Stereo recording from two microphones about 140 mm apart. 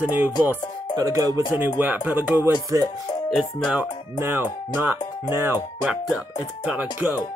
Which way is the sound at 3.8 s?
15° right (ahead or behind).